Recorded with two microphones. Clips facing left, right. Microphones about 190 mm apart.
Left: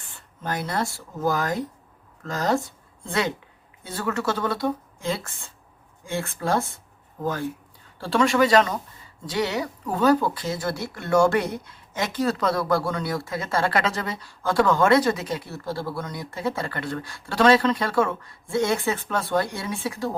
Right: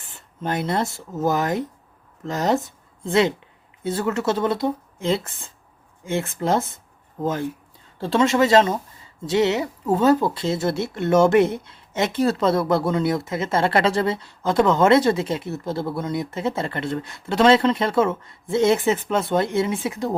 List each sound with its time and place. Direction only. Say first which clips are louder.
0.4 s speech: right 4 dB; 25° right (ahead or behind)
7.9 s speech: right 2 dB; 20° right (ahead or behind)